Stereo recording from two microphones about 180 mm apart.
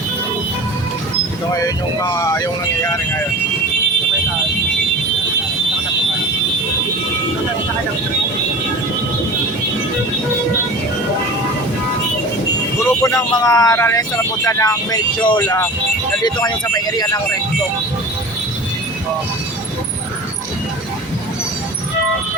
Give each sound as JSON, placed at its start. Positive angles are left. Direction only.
{"t": 1.5, "sound": "speech", "side_deg": 20}
{"t": 13.0, "sound": "speech", "side_deg": 15}